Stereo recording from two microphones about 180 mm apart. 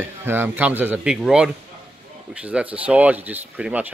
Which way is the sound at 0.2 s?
10° right (ahead or behind).